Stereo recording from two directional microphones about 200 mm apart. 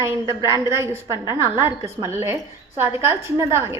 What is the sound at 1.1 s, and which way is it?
Speech, 20° left (ahead or behind).